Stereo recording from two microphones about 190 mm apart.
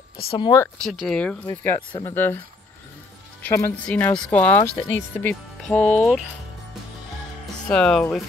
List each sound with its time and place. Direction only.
0.3 s speech: 25° left (ahead or behind)
0.8 s speech: centre (ahead or behind)
3.4 s speech: 10° left (ahead or behind)
7.6 s speech: 5° left (ahead or behind)